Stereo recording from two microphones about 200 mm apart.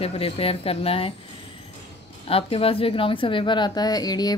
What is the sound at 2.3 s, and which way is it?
A woman's voice, 30° left (ahead or behind).